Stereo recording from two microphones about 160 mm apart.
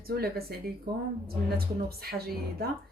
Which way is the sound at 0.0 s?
70° right (ahead or behind).